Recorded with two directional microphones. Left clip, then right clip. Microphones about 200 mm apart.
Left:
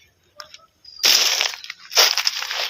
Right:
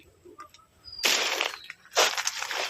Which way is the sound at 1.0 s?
50° left (ahead or behind).